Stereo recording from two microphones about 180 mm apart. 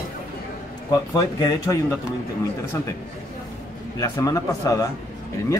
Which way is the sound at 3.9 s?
20° left (ahead or behind).